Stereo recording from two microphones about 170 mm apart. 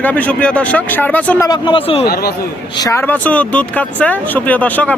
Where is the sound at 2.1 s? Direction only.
65° left (ahead or behind).